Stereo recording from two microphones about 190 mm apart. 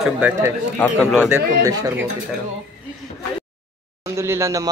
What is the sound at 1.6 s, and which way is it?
Speech, 20° right (ahead or behind).